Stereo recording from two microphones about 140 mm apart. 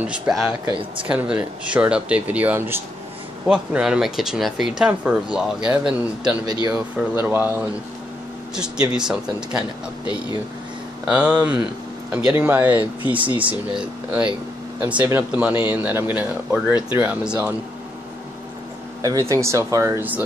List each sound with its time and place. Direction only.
0.0 s speech: 5° right (ahead or behind)
6.4 s speech: 30° right (ahead or behind)
6.7 s speech: 15° right (ahead or behind)
8.9 s speech: 5° right (ahead or behind)
19.0 s speech: 25° right (ahead or behind)